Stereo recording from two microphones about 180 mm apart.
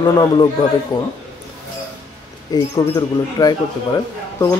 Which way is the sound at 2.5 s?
20° left (ahead or behind).